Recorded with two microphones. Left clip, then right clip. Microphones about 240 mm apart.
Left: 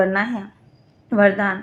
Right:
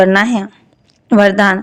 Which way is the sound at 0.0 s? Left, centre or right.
Right.